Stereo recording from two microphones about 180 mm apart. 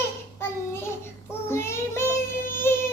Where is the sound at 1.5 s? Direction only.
15° left (ahead or behind).